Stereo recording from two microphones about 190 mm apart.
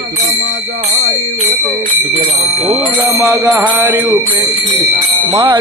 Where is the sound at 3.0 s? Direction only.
15° right (ahead or behind).